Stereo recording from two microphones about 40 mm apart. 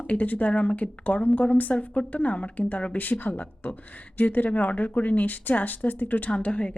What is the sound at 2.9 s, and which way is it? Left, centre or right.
A woman's voice, left.